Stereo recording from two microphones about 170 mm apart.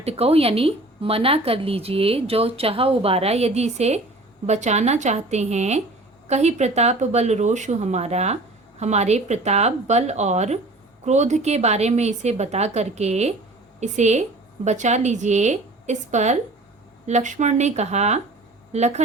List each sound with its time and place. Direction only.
0.0 s a woman's voice: 35° right (ahead or behind)